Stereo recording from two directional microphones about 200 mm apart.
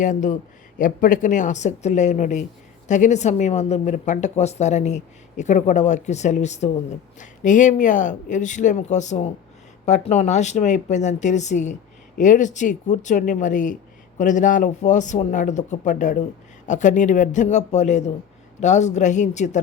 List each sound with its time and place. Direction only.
0.0 s speech: 40° left (ahead or behind)